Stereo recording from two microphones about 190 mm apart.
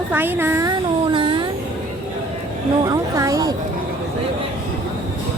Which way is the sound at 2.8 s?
15° right (ahead or behind).